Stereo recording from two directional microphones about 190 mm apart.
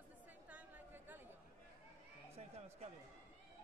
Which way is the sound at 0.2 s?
10° right (ahead or behind).